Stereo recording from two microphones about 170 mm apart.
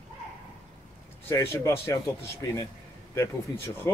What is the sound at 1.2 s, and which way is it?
Speech, 15° left (ahead or behind).